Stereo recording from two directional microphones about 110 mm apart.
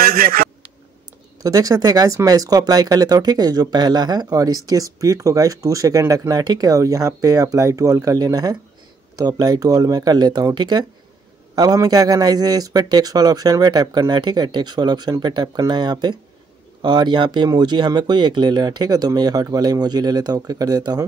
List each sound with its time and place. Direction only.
1.4 s speech: 35° right (ahead or behind)